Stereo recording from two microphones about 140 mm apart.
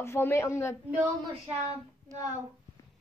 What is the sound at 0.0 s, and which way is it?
Speech, 20° left (ahead or behind).